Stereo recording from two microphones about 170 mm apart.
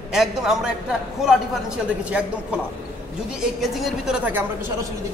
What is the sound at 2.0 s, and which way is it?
Speech, 5° right (ahead or behind).